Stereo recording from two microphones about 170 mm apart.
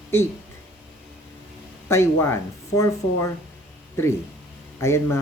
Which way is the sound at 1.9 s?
15° left (ahead or behind).